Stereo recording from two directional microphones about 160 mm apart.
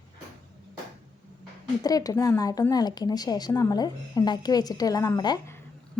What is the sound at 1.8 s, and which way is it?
A woman's voice, 25° left (ahead or behind).